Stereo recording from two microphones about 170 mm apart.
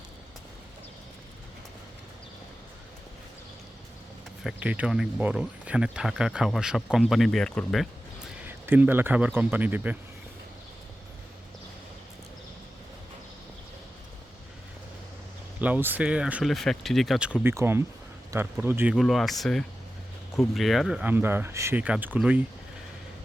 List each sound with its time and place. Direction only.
4.4 s speech: 10° right (ahead or behind)
8.4 s speech: 10° right (ahead or behind)
15.6 s speech: 10° right (ahead or behind)
18.9 s speech: centre (ahead or behind)